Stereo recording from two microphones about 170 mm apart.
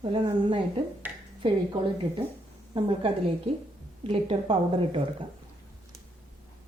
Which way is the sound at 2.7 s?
30° right (ahead or behind).